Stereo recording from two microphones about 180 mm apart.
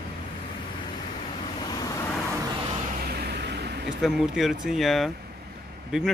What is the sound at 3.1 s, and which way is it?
Vehicle, 65° right (ahead or behind).